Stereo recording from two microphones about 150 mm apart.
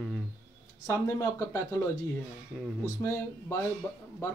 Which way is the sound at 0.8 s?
20° left (ahead or behind).